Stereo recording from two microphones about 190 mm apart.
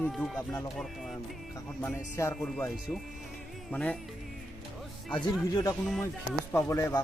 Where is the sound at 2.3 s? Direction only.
5° left (ahead or behind).